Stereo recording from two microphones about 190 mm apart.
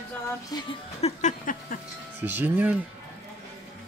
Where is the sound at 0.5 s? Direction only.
20° left (ahead or behind).